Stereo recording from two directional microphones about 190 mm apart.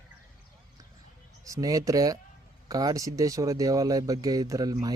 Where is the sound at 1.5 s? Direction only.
20° right (ahead or behind).